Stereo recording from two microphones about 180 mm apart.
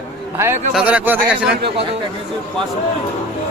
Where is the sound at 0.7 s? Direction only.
5° right (ahead or behind).